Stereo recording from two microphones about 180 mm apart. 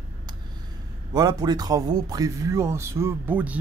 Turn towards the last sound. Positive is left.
turn(degrees=-10)  # may be behind; listen again after turning